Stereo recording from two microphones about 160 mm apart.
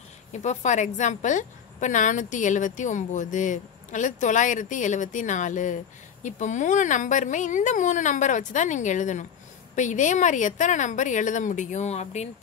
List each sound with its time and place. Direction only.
0.3 s a woman's voice: 45° left (ahead or behind)